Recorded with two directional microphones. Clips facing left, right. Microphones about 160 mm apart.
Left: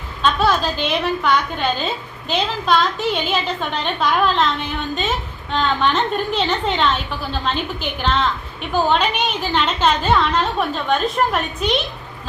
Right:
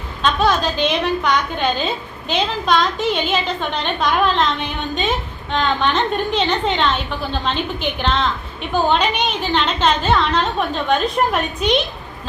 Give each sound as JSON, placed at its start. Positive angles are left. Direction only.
{"t": 0.2, "sound": "a woman's voice", "side_deg": 5}
{"t": 5.5, "sound": "a woman's voice", "side_deg": 0}